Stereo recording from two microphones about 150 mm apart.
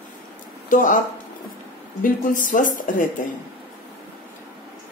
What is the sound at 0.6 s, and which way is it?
Speech, 60° left (ahead or behind).